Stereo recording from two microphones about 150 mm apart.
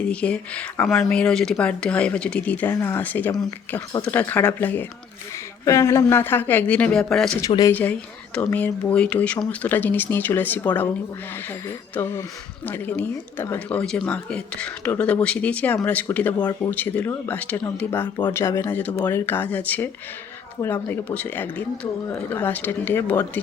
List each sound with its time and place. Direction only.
0.0 s speech: 10° left (ahead or behind)
7.4 s speech: 25° left (ahead or behind)
7.8 s speech: 10° left (ahead or behind)
11.9 s speech: 15° left (ahead or behind)